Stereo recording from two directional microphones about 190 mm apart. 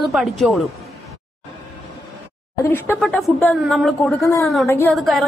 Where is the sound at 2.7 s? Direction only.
10° left (ahead or behind).